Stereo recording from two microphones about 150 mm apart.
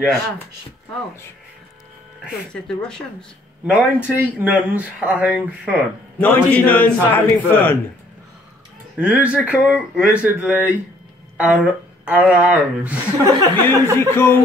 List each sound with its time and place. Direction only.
2.5 s speech: 5° left (ahead or behind)
3.6 s speech: 10° right (ahead or behind)
6.1 s a man's voice: 10° left (ahead or behind)
8.9 s speech: 10° right (ahead or behind)
13.2 s speech: 20° right (ahead or behind)
13.9 s a man's voice: 15° left (ahead or behind)